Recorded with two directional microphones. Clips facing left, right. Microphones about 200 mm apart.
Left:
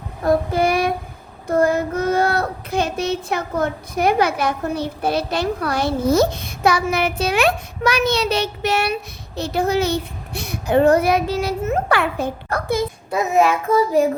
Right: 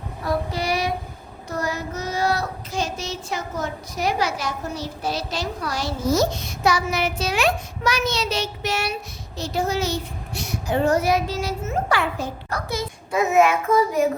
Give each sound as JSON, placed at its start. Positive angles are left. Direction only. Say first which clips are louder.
{"t": 0.3, "sound": "child singing", "louder": "left 7 dB", "side_deg": 55}
{"t": 13.1, "sound": "child singing", "louder": "even", "side_deg": 35}